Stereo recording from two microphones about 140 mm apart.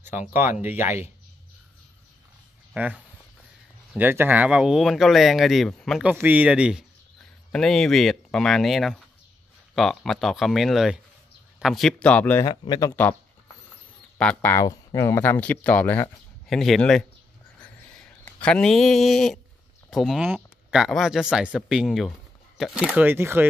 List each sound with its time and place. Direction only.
0.3 s speech: 15° right (ahead or behind)
2.7 s speech: 10° right (ahead or behind)
6.0 s speech: 10° right (ahead or behind)
7.5 s speech: 5° left (ahead or behind)
12.4 s speech: 30° left (ahead or behind)
14.1 s speech: 10° left (ahead or behind); by 23.4 s 15° right (ahead or behind)